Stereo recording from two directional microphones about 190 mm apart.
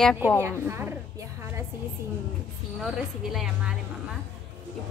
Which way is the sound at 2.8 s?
Centre (ahead or behind).